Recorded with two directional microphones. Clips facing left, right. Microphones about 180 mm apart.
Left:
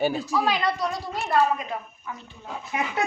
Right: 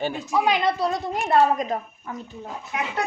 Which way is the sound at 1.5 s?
40° right (ahead or behind).